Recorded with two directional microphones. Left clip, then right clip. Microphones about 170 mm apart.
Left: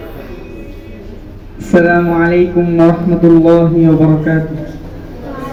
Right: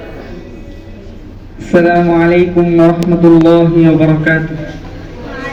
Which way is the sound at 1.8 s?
65° left (ahead or behind).